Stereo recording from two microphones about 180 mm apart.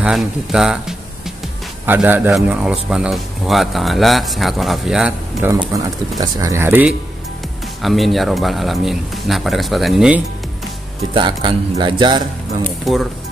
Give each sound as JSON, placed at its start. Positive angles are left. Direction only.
{"t": 0.0, "sound": "a man's voice", "side_deg": 0}
{"t": 5.7, "sound": "speech", "side_deg": -20}
{"t": 7.8, "sound": "a man's voice", "side_deg": 0}
{"t": 11.1, "sound": "speech", "side_deg": -25}
{"t": 12.8, "sound": "a man's voice", "side_deg": 0}